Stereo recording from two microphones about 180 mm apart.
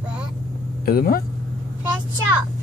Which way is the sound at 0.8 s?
55° left (ahead or behind).